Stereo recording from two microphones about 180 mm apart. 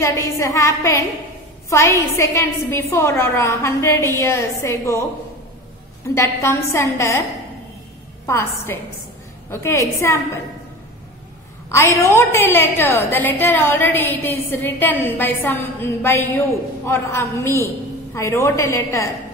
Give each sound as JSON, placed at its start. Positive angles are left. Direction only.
{"t": 0.0, "sound": "a woman's voice", "side_deg": 15}
{"t": 6.1, "sound": "a woman's voice", "side_deg": 15}
{"t": 8.3, "sound": "a woman's voice", "side_deg": 15}
{"t": 11.7, "sound": "a woman's voice", "side_deg": 15}